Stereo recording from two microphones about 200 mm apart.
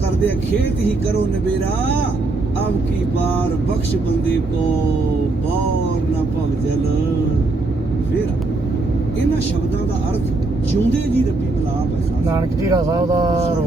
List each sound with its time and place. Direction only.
12.3 s speech: 15° right (ahead or behind)